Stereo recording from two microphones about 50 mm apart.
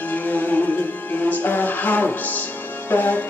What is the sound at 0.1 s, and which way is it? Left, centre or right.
Music, left.